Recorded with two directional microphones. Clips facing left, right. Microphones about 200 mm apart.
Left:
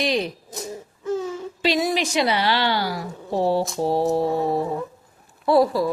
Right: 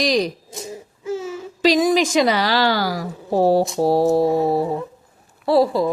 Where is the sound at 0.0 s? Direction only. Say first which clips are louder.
Right 4 dB; 40° right (ahead or behind).